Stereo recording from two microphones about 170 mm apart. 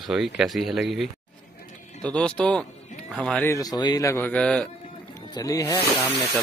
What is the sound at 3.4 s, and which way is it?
Speech, 20° left (ahead or behind).